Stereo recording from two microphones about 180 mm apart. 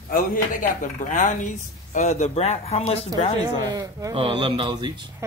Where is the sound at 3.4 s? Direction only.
20° right (ahead or behind).